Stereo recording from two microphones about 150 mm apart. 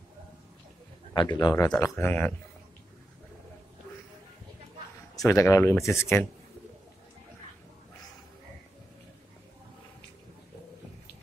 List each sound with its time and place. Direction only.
1.1 s speech: 30° left (ahead or behind)
1.8 s speech: 15° left (ahead or behind)
5.1 s speech: 20° left (ahead or behind)